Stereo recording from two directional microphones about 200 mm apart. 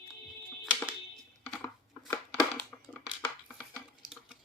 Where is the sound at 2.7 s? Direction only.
5° left (ahead or behind).